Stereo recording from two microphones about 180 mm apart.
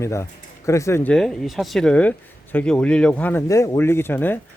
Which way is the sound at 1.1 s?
Centre (ahead or behind).